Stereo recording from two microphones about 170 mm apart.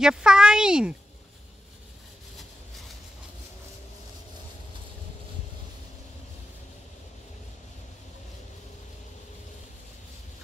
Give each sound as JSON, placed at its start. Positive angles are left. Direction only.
{"t": 0.0, "sound": "a child's voice", "side_deg": -5}